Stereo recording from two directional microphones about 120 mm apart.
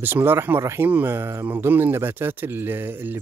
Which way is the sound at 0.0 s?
20° right (ahead or behind).